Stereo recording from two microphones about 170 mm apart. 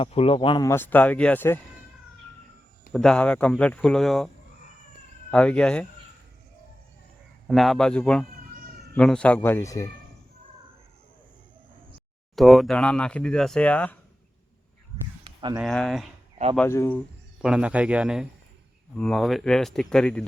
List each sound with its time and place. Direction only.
0.0 s speech: 35° left (ahead or behind)
0.7 s speech: 10° left (ahead or behind)
2.9 s speech: 5° left (ahead or behind)
5.3 s speech: 5° left (ahead or behind)
7.4 s speech: centre (ahead or behind); by 9.9 s 20° left (ahead or behind)
12.4 s speech: centre (ahead or behind)
15.2 s a sound: 30° right (ahead or behind)
15.6 s speech: centre (ahead or behind)
16.6 s speech: 15° left (ahead or behind)
17.4 s speech: 5° right (ahead or behind)